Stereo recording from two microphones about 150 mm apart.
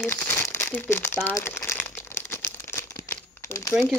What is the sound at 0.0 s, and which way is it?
Crumpling, 15° left (ahead or behind).